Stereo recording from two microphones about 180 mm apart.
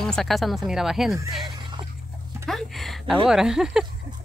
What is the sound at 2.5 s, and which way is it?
Speech, centre (ahead or behind).